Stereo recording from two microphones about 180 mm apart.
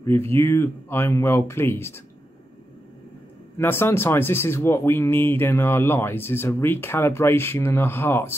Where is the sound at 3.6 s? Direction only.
15° left (ahead or behind).